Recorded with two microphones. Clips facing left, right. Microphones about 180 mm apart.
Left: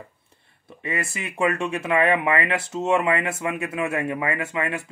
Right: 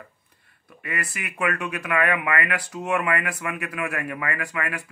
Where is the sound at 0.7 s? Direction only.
25° left (ahead or behind).